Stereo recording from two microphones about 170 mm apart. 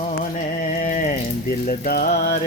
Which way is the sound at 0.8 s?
50° left (ahead or behind).